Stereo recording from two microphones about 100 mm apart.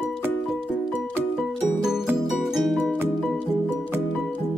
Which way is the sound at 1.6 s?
5° right (ahead or behind).